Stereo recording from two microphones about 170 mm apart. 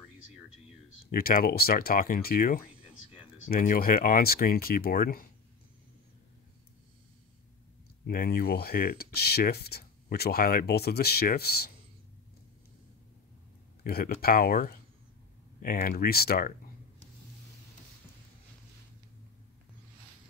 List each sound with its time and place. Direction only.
1.1 s speech: 60° left (ahead or behind)
8.1 s speech: 60° left (ahead or behind)
13.8 s speech: 65° left (ahead or behind)